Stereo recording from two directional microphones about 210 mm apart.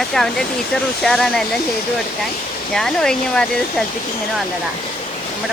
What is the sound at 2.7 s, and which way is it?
Speech, 5° left (ahead or behind).